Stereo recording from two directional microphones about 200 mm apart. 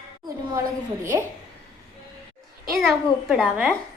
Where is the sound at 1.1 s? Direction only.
15° right (ahead or behind).